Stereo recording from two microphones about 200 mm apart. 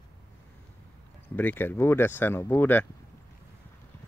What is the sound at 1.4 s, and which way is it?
Speech, 10° left (ahead or behind).